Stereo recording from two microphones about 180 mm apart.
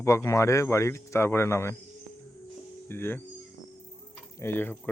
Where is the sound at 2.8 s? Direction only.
10° left (ahead or behind).